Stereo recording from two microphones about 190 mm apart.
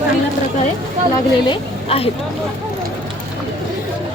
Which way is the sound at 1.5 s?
30° left (ahead or behind).